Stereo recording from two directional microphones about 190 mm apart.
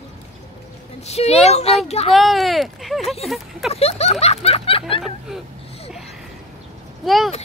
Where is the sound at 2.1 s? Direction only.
Centre (ahead or behind).